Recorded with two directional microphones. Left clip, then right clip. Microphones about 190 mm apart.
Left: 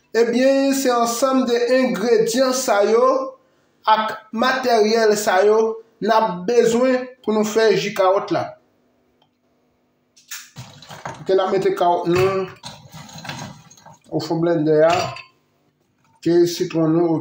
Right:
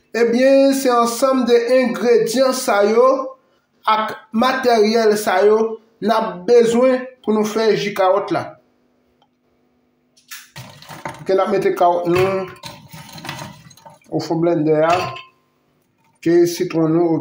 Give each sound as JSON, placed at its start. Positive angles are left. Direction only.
{"t": 0.1, "sound": "speech", "side_deg": -10}
{"t": 11.2, "sound": "speech", "side_deg": -15}
{"t": 14.0, "sound": "speech", "side_deg": -15}
{"t": 16.2, "sound": "speech", "side_deg": -20}